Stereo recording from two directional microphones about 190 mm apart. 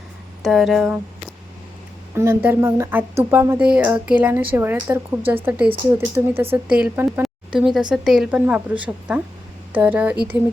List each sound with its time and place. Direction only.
0.4 s speech: centre (ahead or behind)
2.1 s speech: 15° right (ahead or behind)